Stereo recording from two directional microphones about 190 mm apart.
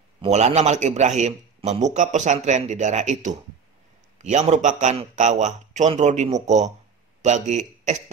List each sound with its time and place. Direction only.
0.2 s a man's voice: 35° right (ahead or behind)